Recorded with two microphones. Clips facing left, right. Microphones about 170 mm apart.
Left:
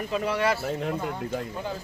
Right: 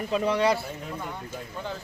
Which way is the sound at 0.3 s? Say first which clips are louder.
Right 2 dB; 15° right (ahead or behind).